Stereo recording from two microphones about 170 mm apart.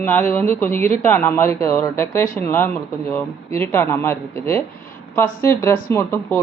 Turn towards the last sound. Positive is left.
turn(degrees=15)  # may be behind; listen again after turning